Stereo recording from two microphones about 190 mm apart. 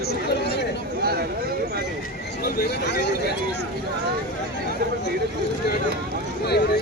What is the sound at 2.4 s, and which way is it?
Vehicle, 50° left (ahead or behind).